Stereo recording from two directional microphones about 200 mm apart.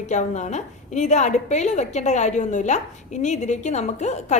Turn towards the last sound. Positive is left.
turn(degrees=35)  # may be behind; listen again after turning